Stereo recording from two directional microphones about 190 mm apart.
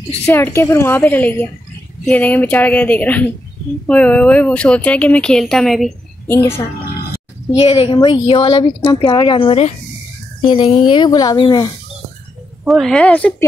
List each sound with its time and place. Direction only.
0.3 s a woman's voice: 10° left (ahead or behind)
6.2 s a woman's voice: 15° left (ahead or behind)
7.5 s speech: 30° left (ahead or behind)
12.6 s speech: centre (ahead or behind)